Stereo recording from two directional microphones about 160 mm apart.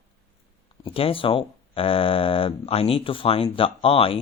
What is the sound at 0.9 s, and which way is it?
Speech, 35° left (ahead or behind).